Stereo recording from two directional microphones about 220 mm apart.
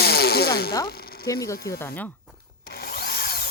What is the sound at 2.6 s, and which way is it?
Drill, 45° left (ahead or behind).